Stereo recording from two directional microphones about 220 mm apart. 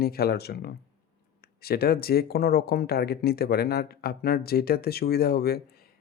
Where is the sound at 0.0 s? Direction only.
45° left (ahead or behind).